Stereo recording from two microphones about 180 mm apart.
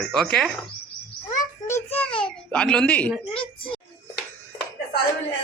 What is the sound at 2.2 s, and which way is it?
Speech, 5° left (ahead or behind).